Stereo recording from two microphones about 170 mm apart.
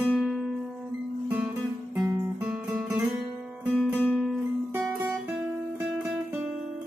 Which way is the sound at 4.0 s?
5° left (ahead or behind).